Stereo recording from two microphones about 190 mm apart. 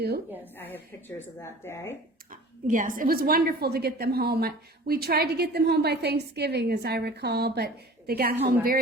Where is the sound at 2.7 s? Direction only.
45° right (ahead or behind).